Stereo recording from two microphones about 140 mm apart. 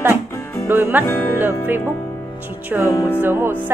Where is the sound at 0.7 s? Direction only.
15° right (ahead or behind).